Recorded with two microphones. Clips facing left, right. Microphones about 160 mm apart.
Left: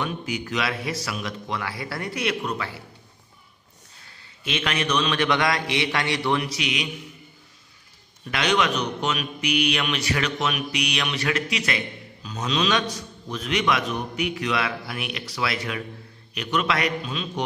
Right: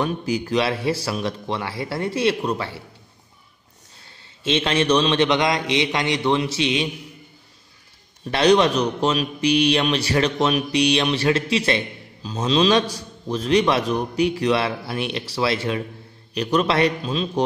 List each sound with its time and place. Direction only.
0.0 s speech: 35° right (ahead or behind)
4.4 s speech: 25° right (ahead or behind)
8.3 s a man's voice: 35° right (ahead or behind)